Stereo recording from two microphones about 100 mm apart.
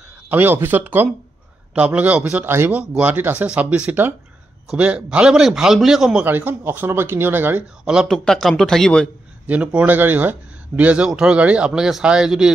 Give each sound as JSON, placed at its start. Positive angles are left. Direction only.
{"t": 0.3, "sound": "speech", "side_deg": -20}
{"t": 2.4, "sound": "speech", "side_deg": -25}
{"t": 2.8, "sound": "a man's voice", "side_deg": -10}
{"t": 6.2, "sound": "speech", "side_deg": -20}
{"t": 7.8, "sound": "a man's voice", "side_deg": -5}
{"t": 9.5, "sound": "speech", "side_deg": -15}